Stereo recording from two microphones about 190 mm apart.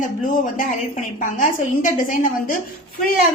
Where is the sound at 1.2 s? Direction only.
45° left (ahead or behind).